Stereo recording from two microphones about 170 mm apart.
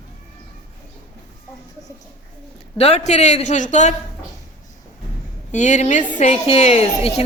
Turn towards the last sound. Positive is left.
turn(degrees=40)  # may be behind; listen again after turning